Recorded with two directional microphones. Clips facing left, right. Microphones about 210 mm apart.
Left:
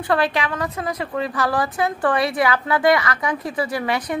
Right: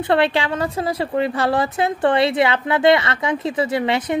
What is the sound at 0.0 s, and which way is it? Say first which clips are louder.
A woman's voice: right 3 dB; 25° right (ahead or behind).